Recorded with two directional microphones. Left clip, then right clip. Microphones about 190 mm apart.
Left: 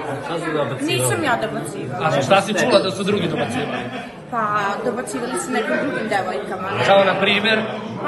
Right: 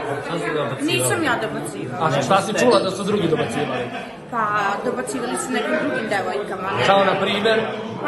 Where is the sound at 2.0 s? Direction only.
15° right (ahead or behind).